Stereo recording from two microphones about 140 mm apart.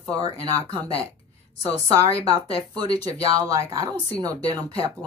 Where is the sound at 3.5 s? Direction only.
25° right (ahead or behind).